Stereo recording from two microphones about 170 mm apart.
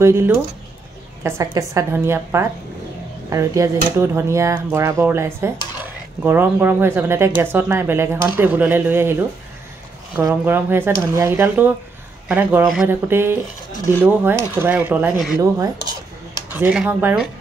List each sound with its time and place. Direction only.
0.0 s a woman's voice: 15° right (ahead or behind)
10.2 s speech: 10° right (ahead or behind)
16.3 s speech: 10° right (ahead or behind)